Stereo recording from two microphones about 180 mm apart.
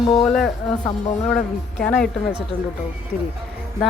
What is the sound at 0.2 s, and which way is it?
Speech, centre (ahead or behind).